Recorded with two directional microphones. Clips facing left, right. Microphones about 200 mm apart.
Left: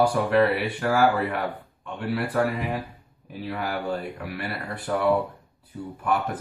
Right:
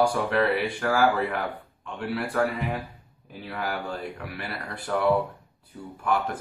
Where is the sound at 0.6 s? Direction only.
Centre (ahead or behind).